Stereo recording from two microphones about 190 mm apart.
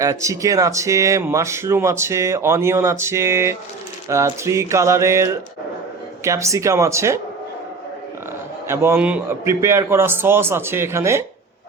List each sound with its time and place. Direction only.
0.0 s speech: 15° right (ahead or behind)
8.6 s speech: 15° right (ahead or behind)